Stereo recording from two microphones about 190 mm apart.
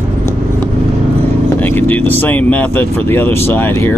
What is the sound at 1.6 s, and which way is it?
Speech, 10° left (ahead or behind).